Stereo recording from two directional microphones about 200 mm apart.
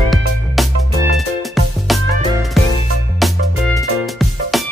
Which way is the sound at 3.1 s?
Centre (ahead or behind).